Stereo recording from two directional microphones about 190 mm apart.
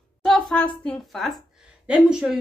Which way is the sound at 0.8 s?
Centre (ahead or behind).